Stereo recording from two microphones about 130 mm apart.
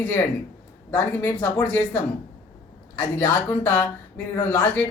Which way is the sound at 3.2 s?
15° left (ahead or behind).